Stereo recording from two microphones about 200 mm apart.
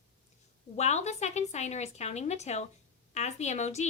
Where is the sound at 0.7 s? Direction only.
35° left (ahead or behind).